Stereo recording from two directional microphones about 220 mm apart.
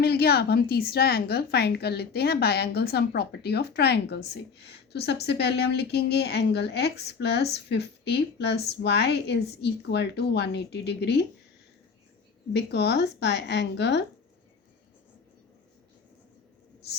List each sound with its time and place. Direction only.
0.0 s a woman's voice: 45° left (ahead or behind)
12.5 s a woman's voice: 50° left (ahead or behind)